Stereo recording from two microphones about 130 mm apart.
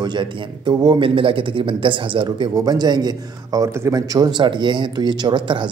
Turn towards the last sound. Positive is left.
turn(degrees=-40)  # may be behind; listen again after turning